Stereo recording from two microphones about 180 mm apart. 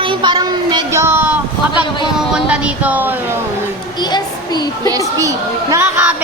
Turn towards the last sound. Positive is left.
turn(degrees=-10)  # may be behind; listen again after turning